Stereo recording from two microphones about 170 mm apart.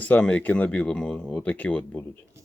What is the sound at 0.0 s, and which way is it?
Speech, 10° left (ahead or behind).